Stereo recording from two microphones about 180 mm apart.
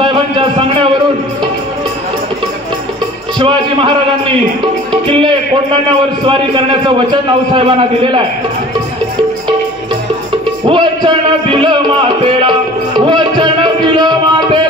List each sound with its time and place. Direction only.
0.0 s a sound: 30° right (ahead or behind)
3.3 s a man's voice: 25° right (ahead or behind)
6.2 s a man's voice: 30° right (ahead or behind)
10.6 s a man's voice: 25° right (ahead or behind)
12.2 s music: 25° right (ahead or behind)